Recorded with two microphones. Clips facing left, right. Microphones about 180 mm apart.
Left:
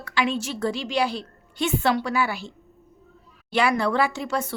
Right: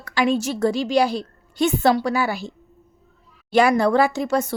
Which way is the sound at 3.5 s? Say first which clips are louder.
Right 6 dB; 45° right (ahead or behind).